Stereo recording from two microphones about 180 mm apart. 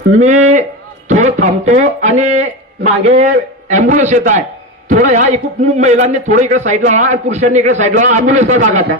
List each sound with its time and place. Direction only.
0.2 s a man's voice: 40° right (ahead or behind)